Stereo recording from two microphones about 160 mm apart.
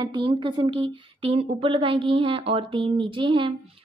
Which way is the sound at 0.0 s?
30° right (ahead or behind).